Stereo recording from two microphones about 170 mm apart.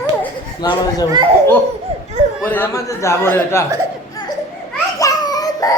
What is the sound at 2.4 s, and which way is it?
Speech, 10° left (ahead or behind).